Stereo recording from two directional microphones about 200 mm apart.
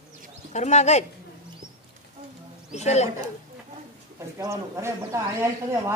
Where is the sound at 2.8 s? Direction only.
35° left (ahead or behind).